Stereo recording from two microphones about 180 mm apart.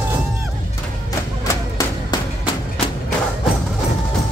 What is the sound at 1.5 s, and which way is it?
Music, 20° left (ahead or behind).